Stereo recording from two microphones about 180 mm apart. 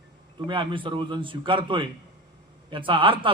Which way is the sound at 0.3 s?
25° right (ahead or behind).